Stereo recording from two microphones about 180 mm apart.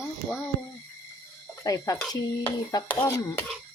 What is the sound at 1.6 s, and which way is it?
Speech, 20° left (ahead or behind).